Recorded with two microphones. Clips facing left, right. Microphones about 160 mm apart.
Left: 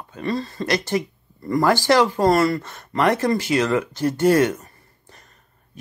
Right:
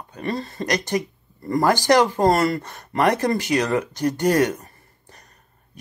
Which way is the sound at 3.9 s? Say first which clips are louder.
Left 2 dB; 15° right (ahead or behind).